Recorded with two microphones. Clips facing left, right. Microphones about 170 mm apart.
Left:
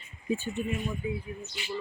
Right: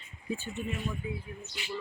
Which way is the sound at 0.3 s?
15° left (ahead or behind).